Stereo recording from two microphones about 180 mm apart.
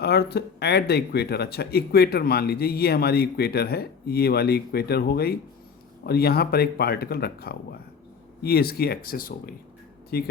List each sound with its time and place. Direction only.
0.0 s speech: 65° left (ahead or behind)